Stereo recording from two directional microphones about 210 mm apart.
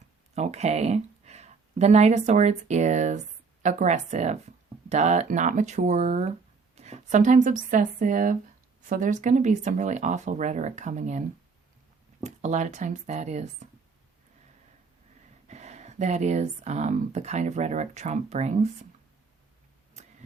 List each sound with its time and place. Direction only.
0.3 s speech: 30° right (ahead or behind)
12.2 s speech: 35° right (ahead or behind)
15.4 s speech: 35° right (ahead or behind)